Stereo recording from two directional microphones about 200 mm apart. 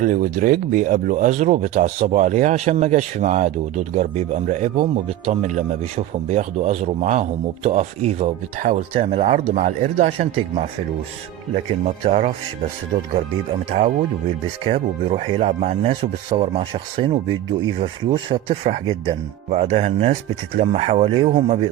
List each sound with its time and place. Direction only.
0.0 s speech: 40° right (ahead or behind)
11.9 s speech: 35° right (ahead or behind)
13.7 s speech: 30° right (ahead or behind)